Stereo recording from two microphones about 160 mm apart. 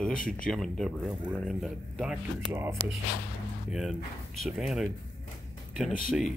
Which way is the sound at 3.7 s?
5° right (ahead or behind).